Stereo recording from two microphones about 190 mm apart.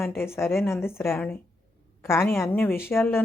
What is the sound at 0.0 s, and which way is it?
A woman's voice, 15° left (ahead or behind).